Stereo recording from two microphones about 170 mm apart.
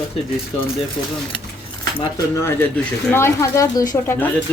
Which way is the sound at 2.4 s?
15° left (ahead or behind).